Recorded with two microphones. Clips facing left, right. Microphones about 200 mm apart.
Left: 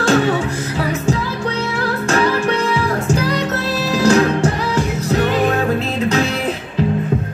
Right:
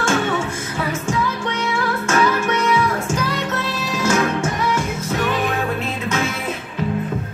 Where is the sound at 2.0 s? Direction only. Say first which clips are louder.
Left 3 dB; 35° left (ahead or behind).